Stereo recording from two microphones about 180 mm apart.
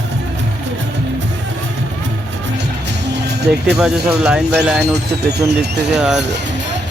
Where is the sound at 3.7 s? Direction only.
5° right (ahead or behind).